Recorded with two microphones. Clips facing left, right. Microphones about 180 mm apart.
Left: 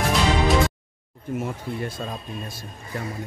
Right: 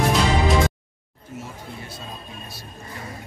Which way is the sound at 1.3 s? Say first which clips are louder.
Left 8 dB; 55° left (ahead or behind).